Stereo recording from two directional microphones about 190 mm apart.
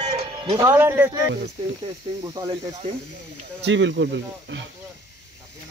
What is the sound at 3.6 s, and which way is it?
Speech, 75° right (ahead or behind).